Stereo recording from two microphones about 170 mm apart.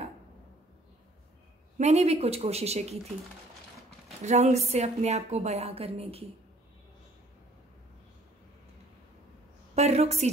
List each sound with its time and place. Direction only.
1.8 s a woman's voice: 40° right (ahead or behind)
4.2 s a woman's voice: 40° right (ahead or behind)
9.8 s a woman's voice: 40° right (ahead or behind)